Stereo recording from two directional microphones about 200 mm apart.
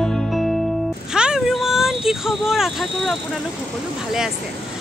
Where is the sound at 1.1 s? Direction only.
5° right (ahead or behind).